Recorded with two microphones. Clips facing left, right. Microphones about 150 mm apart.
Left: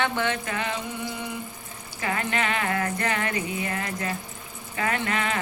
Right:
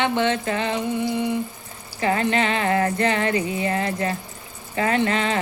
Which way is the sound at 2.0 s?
30° right (ahead or behind).